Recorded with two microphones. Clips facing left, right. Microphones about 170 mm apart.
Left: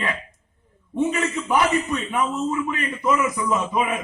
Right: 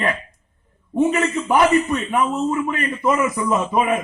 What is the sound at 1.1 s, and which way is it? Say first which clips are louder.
A man's voice: right 4 dB; 50° right (ahead or behind).